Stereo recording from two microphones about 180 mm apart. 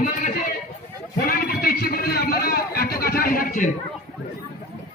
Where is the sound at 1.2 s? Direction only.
55° left (ahead or behind).